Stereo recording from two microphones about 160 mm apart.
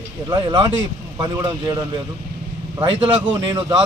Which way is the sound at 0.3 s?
30° right (ahead or behind).